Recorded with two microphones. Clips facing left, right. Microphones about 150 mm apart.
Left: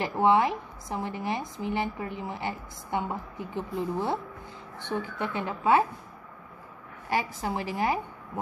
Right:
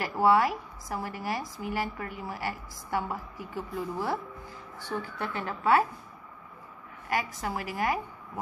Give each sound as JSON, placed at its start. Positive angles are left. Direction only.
{"t": 0.0, "sound": "a woman's voice", "side_deg": 20}
{"t": 7.4, "sound": "a woman's voice", "side_deg": 25}